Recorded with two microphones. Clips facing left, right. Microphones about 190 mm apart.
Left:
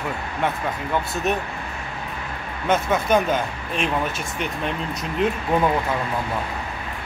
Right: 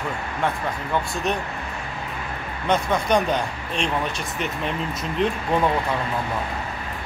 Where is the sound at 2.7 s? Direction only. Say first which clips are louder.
Left 1 dB; 5° left (ahead or behind).